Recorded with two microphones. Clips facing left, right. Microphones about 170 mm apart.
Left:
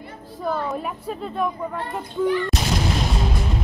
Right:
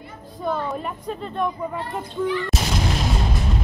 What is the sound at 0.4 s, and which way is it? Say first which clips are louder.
Speech: even; 5° left (ahead or behind).